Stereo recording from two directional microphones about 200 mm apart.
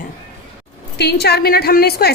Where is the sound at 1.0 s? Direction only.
55° left (ahead or behind).